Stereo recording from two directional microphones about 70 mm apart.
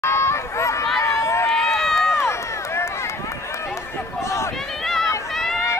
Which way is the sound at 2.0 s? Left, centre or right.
Left.